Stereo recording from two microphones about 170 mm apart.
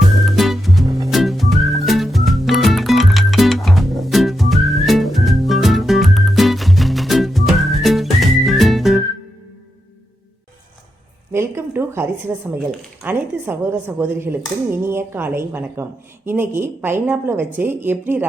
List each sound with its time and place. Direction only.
0.3 s music: centre (ahead or behind)
11.3 s a sound: 15° right (ahead or behind)
12.5 s a woman's voice: 10° right (ahead or behind)